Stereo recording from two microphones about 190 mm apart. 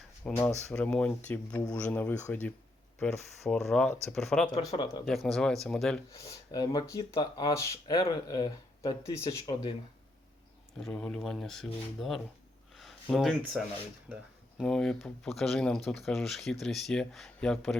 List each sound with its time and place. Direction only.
0.3 s speech: 5° left (ahead or behind)
4.7 s speech: 25° left (ahead or behind)
5.0 s speech: centre (ahead or behind)
6.1 s speech: 20° left (ahead or behind)
10.8 s speech: 5° left (ahead or behind)
12.7 s a sound: centre (ahead or behind)
14.6 s speech: centre (ahead or behind)